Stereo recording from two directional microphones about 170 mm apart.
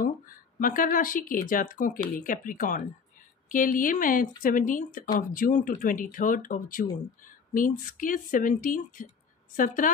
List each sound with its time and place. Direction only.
0.6 s speech: 55° left (ahead or behind)